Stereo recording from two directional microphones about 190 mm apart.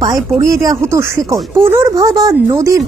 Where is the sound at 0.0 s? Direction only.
20° right (ahead or behind).